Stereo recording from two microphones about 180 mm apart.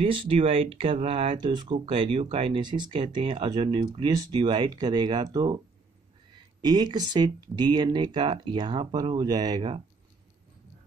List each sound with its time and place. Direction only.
0.0 s speech: 30° right (ahead or behind)